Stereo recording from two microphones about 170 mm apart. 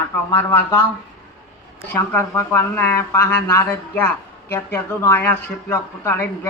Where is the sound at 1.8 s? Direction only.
15° left (ahead or behind).